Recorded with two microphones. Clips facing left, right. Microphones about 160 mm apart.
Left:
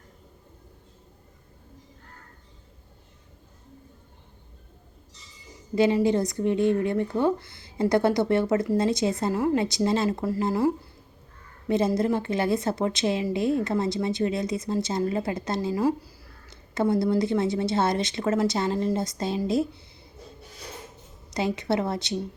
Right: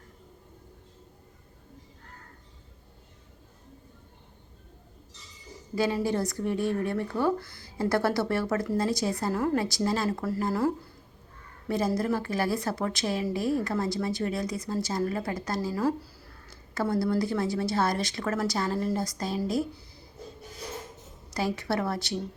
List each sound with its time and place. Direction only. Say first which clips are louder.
5.7 s a woman's voice: left 6 dB; 20° left (ahead or behind)
9.3 s a woman's voice: left 3 dB; 10° left (ahead or behind)
11.7 s a woman's voice: left 4 dB; 25° left (ahead or behind)
21.3 s a woman's voice: left 3 dB; 20° left (ahead or behind)